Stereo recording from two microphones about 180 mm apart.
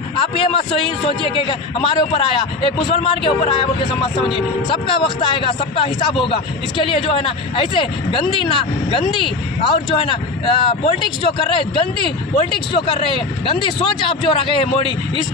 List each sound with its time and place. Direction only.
0.4 s a man's voice: 30° left (ahead or behind)
5.2 s a man's voice: 30° left (ahead or behind)